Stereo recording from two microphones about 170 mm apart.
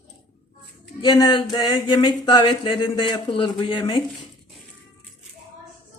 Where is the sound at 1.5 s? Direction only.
25° left (ahead or behind).